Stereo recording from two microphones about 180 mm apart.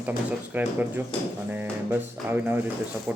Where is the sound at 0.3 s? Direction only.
10° right (ahead or behind).